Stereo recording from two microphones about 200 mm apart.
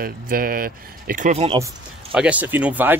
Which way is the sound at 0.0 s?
45° right (ahead or behind).